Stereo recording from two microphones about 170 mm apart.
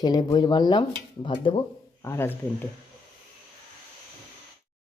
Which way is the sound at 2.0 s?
15° left (ahead or behind).